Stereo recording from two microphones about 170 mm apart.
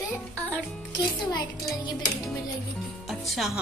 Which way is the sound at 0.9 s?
25° left (ahead or behind).